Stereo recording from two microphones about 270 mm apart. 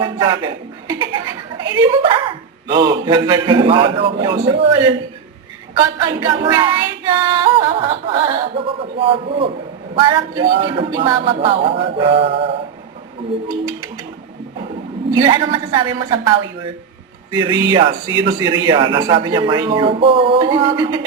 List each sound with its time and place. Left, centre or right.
0.0 s speech: centre
6.0 s female singing: centre
15.1 s a man's voice: centre